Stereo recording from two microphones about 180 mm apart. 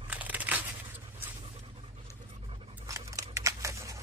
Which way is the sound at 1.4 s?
35° right (ahead or behind).